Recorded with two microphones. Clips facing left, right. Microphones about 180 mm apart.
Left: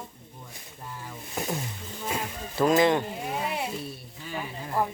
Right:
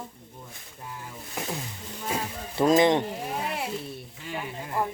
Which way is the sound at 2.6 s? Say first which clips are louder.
Right 1 dB; 20° right (ahead or behind).